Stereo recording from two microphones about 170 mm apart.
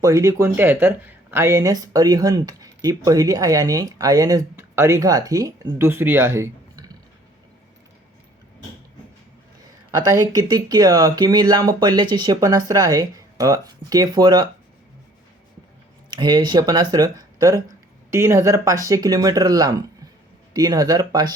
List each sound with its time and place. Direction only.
0.0 s speech: 20° right (ahead or behind)
9.9 s speech: 20° right (ahead or behind)
16.0 s speech: 25° right (ahead or behind)